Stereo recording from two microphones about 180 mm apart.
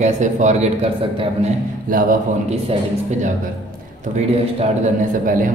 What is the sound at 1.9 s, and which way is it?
Speech, 50° right (ahead or behind).